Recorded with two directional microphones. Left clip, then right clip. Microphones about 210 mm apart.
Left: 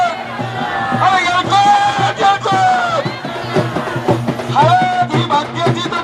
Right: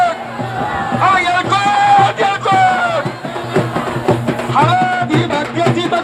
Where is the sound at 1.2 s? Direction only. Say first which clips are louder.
Left 2 dB; centre (ahead or behind).